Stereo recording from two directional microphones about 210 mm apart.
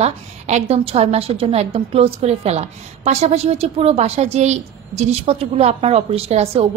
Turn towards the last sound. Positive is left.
turn(degrees=-30)  # may be behind; listen again after turning